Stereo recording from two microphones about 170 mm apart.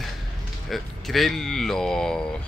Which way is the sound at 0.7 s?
Centre (ahead or behind).